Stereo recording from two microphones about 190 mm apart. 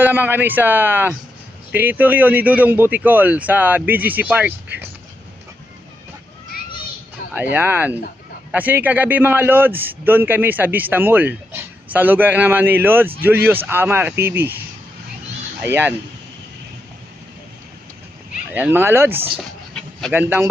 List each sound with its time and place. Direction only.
0.0 s a man's voice: 10° right (ahead or behind)
7.2 s a sound: 45° left (ahead or behind)
7.5 s a man's voice: 10° right (ahead or behind)
15.7 s a man's voice: 10° right (ahead or behind)
18.5 s a man's voice: 10° right (ahead or behind)
19.7 s a sound: 5° left (ahead or behind)
20.1 s a man's voice: 10° right (ahead or behind)